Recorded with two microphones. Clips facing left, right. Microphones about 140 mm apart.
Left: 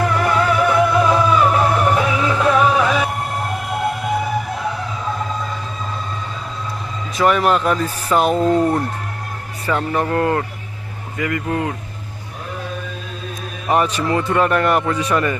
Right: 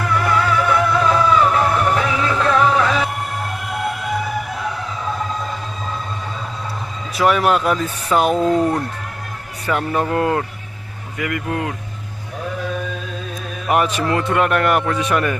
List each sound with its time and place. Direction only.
0.3 s music: 20° left (ahead or behind)
7.2 s speech: centre (ahead or behind)
9.7 s speech: 15° right (ahead or behind)
13.7 s speech: centre (ahead or behind)
14.6 s a man's voice: 20° left (ahead or behind)
14.8 s speech: centre (ahead or behind)